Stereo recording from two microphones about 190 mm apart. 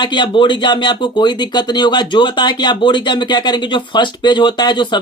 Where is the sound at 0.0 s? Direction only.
25° left (ahead or behind).